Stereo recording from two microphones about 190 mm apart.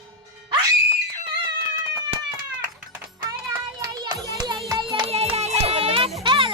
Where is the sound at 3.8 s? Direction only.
20° right (ahead or behind).